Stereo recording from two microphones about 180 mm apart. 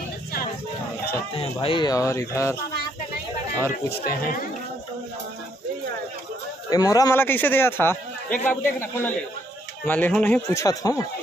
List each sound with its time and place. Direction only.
1.3 s speech: 30° left (ahead or behind)
3.7 s speech: 55° left (ahead or behind)
6.7 s a man's voice: 20° left (ahead or behind)